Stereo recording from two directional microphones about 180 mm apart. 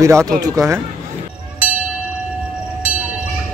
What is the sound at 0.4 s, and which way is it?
Speech, 20° right (ahead or behind).